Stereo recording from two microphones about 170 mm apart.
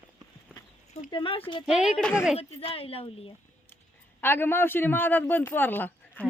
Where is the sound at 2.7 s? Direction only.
35° left (ahead or behind).